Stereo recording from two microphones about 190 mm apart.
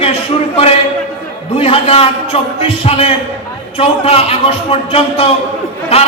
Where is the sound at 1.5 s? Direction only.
30° left (ahead or behind).